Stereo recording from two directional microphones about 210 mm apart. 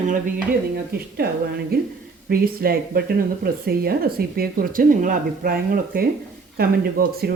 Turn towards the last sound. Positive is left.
turn(degrees=-45)  # may be behind; listen again after turning